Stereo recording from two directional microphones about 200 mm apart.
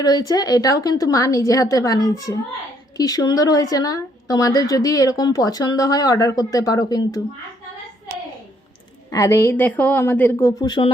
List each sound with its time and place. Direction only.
0.0 s a woman's voice: 20° left (ahead or behind)
9.0 s a woman's voice: 15° left (ahead or behind)